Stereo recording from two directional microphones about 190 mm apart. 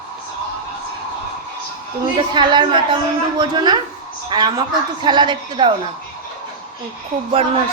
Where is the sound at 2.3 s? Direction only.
25° right (ahead or behind).